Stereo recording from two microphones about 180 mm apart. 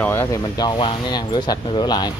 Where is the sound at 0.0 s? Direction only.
15° left (ahead or behind).